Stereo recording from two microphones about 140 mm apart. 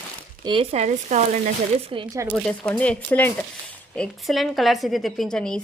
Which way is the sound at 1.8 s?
40° right (ahead or behind).